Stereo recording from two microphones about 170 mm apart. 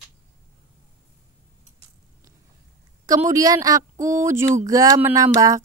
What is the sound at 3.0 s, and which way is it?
Speech, 20° right (ahead or behind).